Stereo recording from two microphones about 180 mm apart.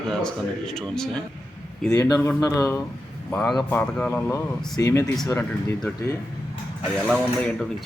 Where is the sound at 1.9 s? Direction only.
20° left (ahead or behind).